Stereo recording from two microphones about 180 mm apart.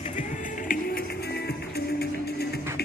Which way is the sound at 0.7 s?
55° left (ahead or behind).